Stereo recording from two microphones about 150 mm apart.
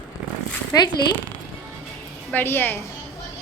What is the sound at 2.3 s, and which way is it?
Speech, 15° left (ahead or behind).